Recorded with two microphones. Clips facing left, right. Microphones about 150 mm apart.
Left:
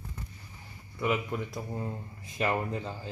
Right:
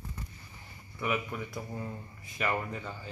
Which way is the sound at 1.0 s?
20° left (ahead or behind).